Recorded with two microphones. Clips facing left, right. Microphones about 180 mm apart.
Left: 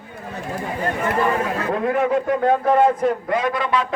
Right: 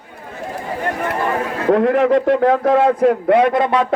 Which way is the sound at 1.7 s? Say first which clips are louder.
Right 7 dB; 80° right.